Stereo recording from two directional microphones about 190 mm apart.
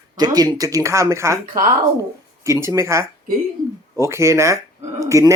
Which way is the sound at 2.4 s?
15° right (ahead or behind).